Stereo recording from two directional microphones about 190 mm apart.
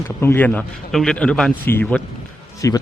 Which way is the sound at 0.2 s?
10° left (ahead or behind).